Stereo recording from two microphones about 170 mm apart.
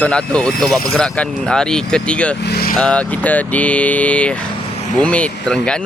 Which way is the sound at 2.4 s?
65° left (ahead or behind).